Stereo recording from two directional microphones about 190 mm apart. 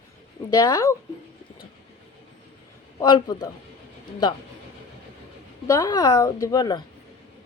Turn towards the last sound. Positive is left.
turn(degrees=20)  # may be behind; listen again after turning